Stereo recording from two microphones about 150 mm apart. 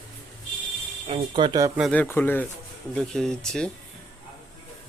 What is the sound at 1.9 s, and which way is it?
Speech, 10° left (ahead or behind).